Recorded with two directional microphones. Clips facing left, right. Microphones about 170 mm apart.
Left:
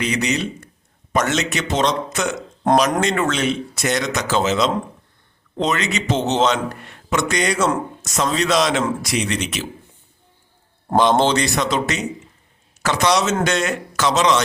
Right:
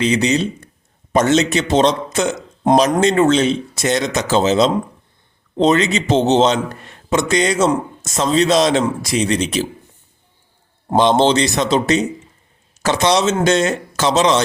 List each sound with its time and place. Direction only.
0.0 s a man's voice: 30° right (ahead or behind)
10.9 s a man's voice: 25° right (ahead or behind)